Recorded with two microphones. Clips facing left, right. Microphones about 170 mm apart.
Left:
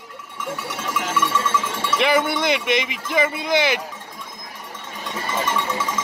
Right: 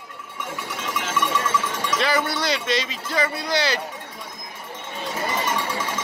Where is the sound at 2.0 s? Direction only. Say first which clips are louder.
Left 5 dB; 20° left (ahead or behind).